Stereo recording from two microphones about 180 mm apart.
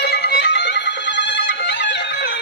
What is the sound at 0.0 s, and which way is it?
Music, 65° left (ahead or behind).